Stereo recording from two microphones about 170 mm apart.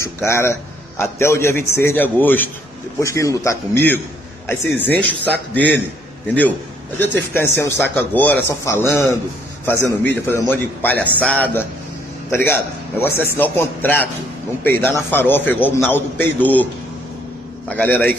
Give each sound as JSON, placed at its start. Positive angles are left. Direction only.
{"t": 0.0, "sound": "a man's voice", "side_deg": 15}
{"t": 7.0, "sound": "a man's voice", "side_deg": 10}
{"t": 17.6, "sound": "a man's voice", "side_deg": 10}